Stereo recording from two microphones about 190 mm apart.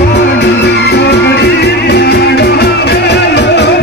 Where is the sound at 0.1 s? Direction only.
60° left (ahead or behind).